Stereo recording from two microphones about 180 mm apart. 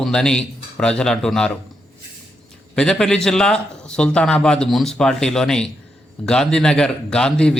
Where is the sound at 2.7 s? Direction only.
5° left (ahead or behind).